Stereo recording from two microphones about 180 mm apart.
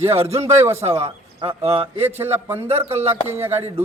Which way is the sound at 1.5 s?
35° right (ahead or behind).